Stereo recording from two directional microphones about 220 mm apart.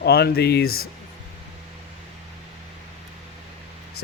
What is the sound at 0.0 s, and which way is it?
Speech, 45° left (ahead or behind).